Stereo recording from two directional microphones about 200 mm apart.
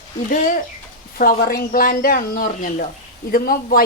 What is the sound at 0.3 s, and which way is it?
A woman's voice, 40° left (ahead or behind).